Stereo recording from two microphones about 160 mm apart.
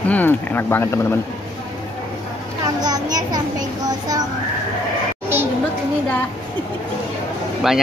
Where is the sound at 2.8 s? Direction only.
25° right (ahead or behind).